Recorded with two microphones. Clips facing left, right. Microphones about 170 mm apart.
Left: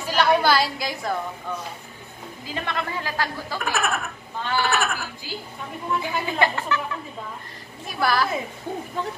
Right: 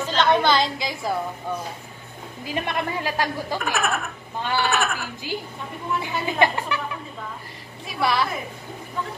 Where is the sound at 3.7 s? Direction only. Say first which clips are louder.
Right 1 dB; centre (ahead or behind).